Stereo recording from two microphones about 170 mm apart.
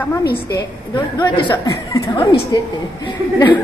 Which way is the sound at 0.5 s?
25° left (ahead or behind).